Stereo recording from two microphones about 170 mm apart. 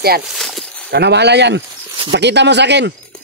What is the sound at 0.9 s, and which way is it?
Speech, 80° right.